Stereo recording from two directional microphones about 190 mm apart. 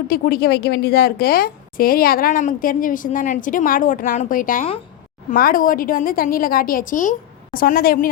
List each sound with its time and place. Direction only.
0.1 s a woman's voice: 55° left (ahead or behind)